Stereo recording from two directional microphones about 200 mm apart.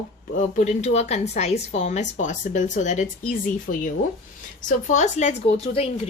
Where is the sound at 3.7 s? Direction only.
45° left (ahead or behind).